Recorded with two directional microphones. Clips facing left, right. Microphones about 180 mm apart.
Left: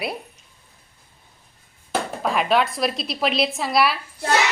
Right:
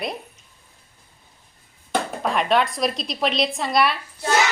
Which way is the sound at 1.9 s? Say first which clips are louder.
Even; centre (ahead or behind).